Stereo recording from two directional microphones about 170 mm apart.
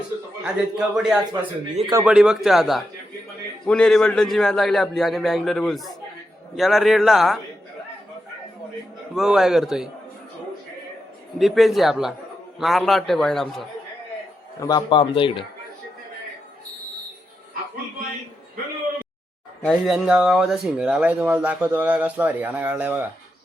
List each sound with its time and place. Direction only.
0.4 s a man's voice: 5° right (ahead or behind)
9.1 s a man's voice: 5° right (ahead or behind)
11.3 s a man's voice: centre (ahead or behind)
14.6 s speech: 25° left (ahead or behind)
19.6 s speech: centre (ahead or behind)